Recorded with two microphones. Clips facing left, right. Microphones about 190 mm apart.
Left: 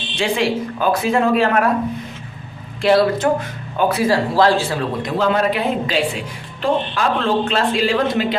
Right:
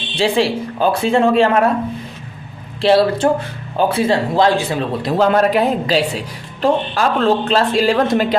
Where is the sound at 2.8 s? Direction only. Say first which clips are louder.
Right 2 dB; 30° right (ahead or behind).